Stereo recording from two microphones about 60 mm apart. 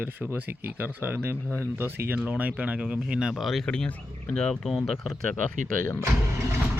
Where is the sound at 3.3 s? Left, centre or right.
Centre.